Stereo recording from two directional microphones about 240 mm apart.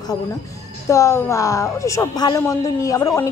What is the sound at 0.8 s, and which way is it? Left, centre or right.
A woman's voice, centre.